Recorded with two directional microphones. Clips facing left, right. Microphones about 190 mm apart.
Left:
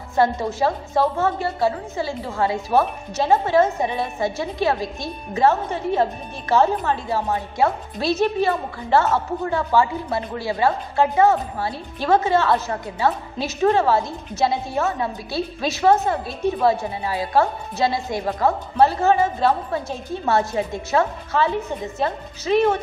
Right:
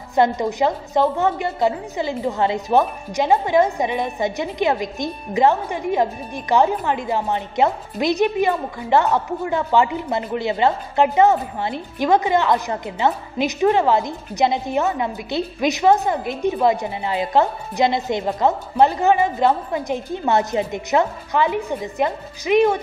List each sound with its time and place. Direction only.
0.1 s a woman's voice: 15° right (ahead or behind)